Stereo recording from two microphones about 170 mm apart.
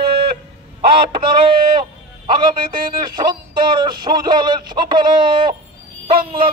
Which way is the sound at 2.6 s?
55° right (ahead or behind).